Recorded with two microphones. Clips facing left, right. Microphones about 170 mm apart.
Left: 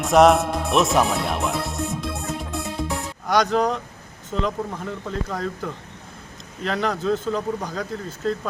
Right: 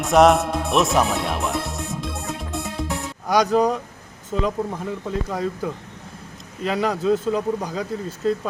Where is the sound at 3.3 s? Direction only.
10° right (ahead or behind).